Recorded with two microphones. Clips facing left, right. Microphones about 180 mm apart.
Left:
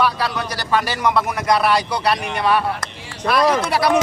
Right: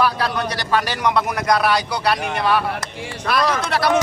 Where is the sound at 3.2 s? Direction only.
20° left (ahead or behind).